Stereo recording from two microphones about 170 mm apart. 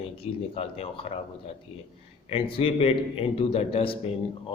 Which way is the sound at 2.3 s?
35° left (ahead or behind).